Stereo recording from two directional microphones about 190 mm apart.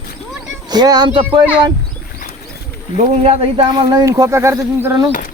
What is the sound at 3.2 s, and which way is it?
Speech, 30° right (ahead or behind).